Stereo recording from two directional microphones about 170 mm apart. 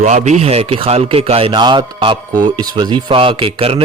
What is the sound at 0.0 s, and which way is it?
A man's voice, 45° right (ahead or behind).